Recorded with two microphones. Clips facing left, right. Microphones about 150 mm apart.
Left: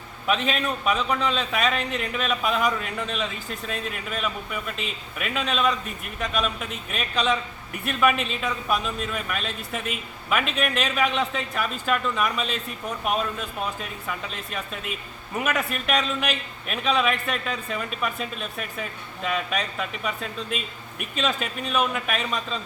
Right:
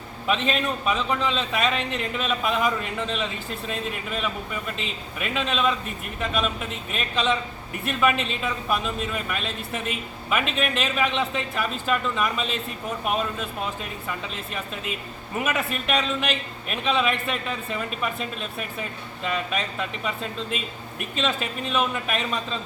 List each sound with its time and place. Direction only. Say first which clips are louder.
0.3 s a man's voice: even; centre (ahead or behind)
14.1 s a man's voice: even; centre (ahead or behind)